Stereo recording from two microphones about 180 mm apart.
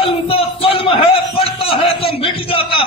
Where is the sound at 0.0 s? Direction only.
30° left (ahead or behind).